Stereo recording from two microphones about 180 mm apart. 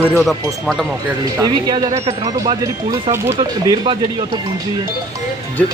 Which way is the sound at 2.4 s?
20° right (ahead or behind).